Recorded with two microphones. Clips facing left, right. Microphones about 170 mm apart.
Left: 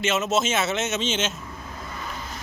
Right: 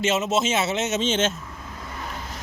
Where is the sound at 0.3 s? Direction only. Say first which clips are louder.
Right 1 dB; 30° right (ahead or behind).